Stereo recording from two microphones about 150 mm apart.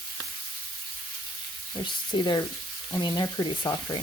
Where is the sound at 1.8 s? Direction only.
30° left (ahead or behind).